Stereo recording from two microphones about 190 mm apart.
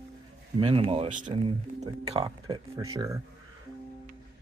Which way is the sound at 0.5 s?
30° right (ahead or behind).